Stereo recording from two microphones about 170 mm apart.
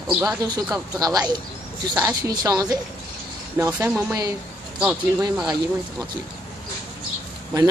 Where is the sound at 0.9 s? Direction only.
20° right (ahead or behind).